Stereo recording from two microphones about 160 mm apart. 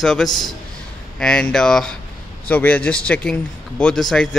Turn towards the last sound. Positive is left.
turn(degrees=5)  # may be behind; listen again after turning